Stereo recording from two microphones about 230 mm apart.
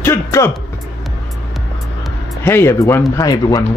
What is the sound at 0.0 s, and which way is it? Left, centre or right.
Music, centre.